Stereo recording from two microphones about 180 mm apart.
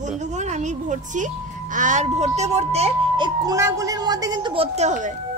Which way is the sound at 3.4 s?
20° right (ahead or behind).